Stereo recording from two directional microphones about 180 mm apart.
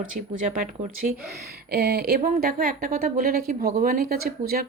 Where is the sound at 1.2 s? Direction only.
60° right (ahead or behind).